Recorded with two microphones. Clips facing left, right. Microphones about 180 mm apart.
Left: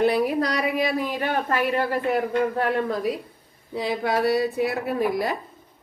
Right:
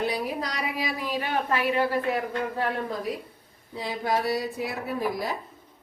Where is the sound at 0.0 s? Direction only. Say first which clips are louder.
Left 8 dB; 60° left (ahead or behind).